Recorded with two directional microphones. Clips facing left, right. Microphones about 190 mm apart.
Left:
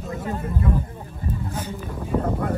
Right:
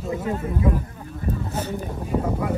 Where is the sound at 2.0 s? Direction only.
5° right (ahead or behind).